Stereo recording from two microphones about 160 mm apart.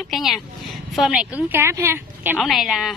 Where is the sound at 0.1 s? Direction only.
Centre (ahead or behind).